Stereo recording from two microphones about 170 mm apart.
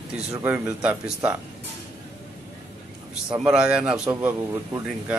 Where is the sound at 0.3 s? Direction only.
10° right (ahead or behind).